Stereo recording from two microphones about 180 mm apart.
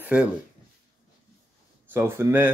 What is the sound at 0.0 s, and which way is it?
Speech, 5° right (ahead or behind).